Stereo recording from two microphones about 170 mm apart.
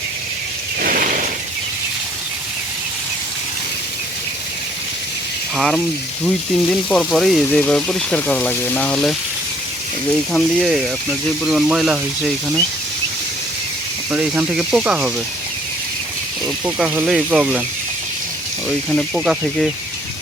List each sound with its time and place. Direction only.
0.8 s a sound: 55° right (ahead or behind)
5.5 s speech: centre (ahead or behind)
10.3 s speech: centre (ahead or behind)
14.1 s speech: 10° right (ahead or behind)
16.6 s speech: 5° right (ahead or behind)
18.9 s speech: centre (ahead or behind)